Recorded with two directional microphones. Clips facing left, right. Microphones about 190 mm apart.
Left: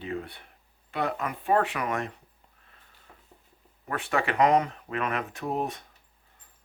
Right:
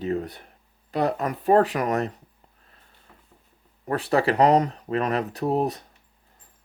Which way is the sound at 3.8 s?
35° right (ahead or behind).